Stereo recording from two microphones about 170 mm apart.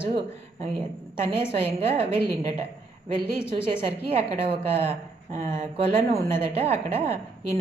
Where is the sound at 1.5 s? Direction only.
35° right (ahead or behind).